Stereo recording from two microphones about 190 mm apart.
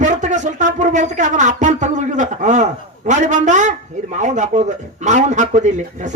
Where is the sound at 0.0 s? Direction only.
40° right (ahead or behind).